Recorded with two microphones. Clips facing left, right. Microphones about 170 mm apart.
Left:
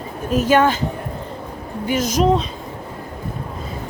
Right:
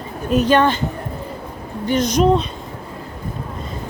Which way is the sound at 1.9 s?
5° left (ahead or behind).